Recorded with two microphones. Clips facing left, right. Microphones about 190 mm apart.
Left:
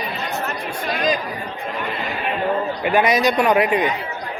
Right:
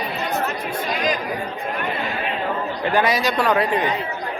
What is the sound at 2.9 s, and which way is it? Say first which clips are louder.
Speech: left 3 dB; 20° left (ahead or behind).